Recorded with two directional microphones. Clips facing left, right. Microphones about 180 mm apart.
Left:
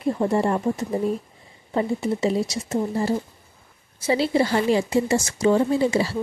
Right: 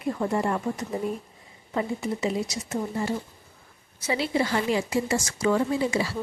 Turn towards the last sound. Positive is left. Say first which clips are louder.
# left 5 dB
turn(degrees=30)  # may be behind; listen again after turning